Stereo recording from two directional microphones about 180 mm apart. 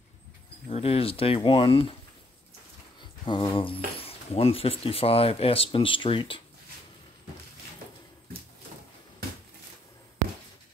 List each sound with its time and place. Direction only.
0.7 s speech: 35° left (ahead or behind)
3.0 s a sound: 25° left (ahead or behind)
3.5 s speech: 30° left (ahead or behind)